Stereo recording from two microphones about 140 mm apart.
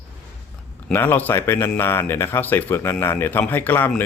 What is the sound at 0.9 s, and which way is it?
A man's voice, 15° left (ahead or behind).